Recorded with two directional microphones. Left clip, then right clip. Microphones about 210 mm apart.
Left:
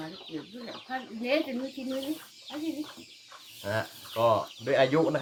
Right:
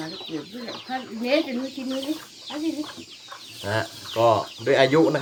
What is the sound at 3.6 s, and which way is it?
Speech, 5° right (ahead or behind).